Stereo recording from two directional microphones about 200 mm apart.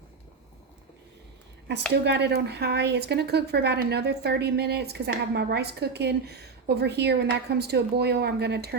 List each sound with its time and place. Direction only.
1.9 s speech: 55° right (ahead or behind)